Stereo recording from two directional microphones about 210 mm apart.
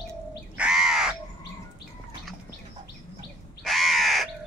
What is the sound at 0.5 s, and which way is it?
Crow, 5° right (ahead or behind).